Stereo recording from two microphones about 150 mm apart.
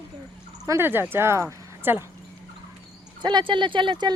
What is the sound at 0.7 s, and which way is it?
Speech, 15° right (ahead or behind).